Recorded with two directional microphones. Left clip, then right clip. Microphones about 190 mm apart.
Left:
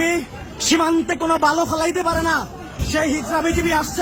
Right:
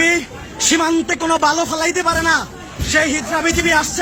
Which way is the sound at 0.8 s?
5° left (ahead or behind).